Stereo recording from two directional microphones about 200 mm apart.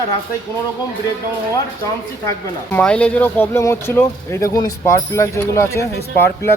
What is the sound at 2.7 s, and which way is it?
Speech, 5° left (ahead or behind).